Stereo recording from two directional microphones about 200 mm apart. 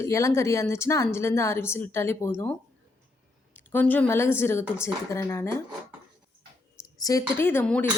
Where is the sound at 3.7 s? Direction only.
10° left (ahead or behind).